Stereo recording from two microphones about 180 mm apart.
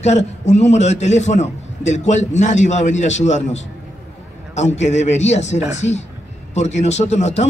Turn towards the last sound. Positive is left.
turn(degrees=40)  # may be behind; listen again after turning